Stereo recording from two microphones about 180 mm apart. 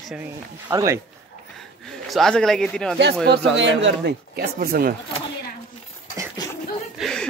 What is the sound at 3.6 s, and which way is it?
Speech, 85° right.